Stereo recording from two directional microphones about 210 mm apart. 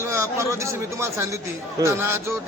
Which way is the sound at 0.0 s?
15° right (ahead or behind).